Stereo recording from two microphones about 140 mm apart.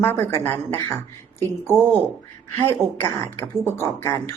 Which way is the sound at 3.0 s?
20° left (ahead or behind).